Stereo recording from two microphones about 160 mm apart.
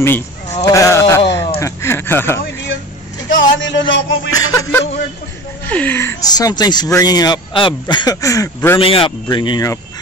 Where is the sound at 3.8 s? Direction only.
20° left (ahead or behind).